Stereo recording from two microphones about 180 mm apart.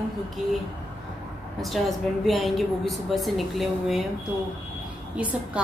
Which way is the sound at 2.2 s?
Centre (ahead or behind).